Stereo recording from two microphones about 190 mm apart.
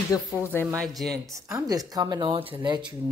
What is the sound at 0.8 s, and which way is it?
Speech, centre (ahead or behind).